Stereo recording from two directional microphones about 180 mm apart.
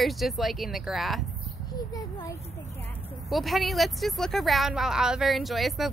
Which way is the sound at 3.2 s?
Centre (ahead or behind).